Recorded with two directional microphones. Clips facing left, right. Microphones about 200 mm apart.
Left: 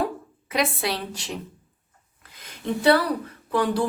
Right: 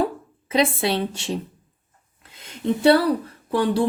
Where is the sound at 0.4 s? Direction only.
25° right (ahead or behind).